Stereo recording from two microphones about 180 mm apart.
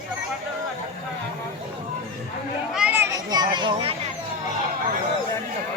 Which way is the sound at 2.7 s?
5° right (ahead or behind).